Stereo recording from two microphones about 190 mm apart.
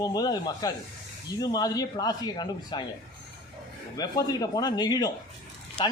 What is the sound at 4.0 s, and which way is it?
Speech, 20° left (ahead or behind).